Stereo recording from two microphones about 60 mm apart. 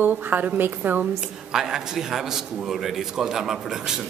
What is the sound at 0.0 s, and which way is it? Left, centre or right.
A woman's voice, right.